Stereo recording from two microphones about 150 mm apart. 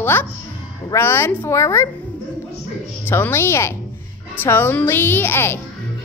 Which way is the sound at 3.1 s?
15° left (ahead or behind).